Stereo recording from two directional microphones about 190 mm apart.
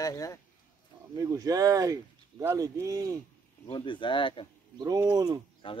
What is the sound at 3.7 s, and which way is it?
Speech, 25° left (ahead or behind).